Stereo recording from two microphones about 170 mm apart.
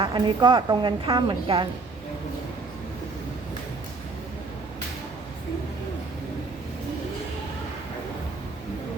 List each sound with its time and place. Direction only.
0.0 s a woman's voice: 30° right (ahead or behind)